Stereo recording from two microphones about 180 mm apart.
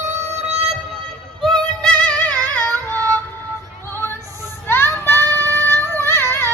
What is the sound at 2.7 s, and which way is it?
Child singing, 20° right (ahead or behind).